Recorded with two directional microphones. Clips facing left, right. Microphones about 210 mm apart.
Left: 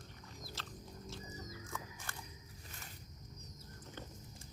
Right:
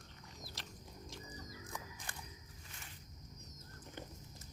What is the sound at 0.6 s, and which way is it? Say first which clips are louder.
Pig: left 2 dB; 15° right (ahead or behind).